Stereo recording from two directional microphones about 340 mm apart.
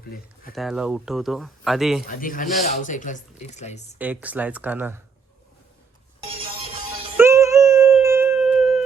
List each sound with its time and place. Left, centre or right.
0.5 s speech: centre
2.0 s speech: left
3.9 s speech: centre
7.2 s music: centre